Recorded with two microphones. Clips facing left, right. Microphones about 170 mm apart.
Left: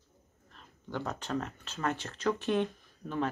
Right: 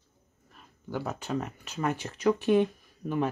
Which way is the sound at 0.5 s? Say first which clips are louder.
Right 3 dB; 10° right (ahead or behind).